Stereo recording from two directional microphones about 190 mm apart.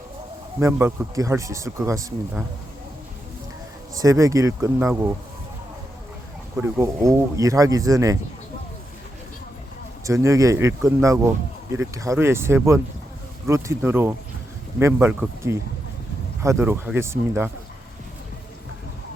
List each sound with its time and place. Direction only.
0.6 s speech: 15° right (ahead or behind)
3.9 s speech: 15° right (ahead or behind)
6.6 s speech: 15° right (ahead or behind)
10.0 s speech: 15° right (ahead or behind)